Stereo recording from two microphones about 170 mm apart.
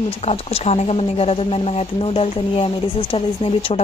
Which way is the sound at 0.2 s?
35° left (ahead or behind).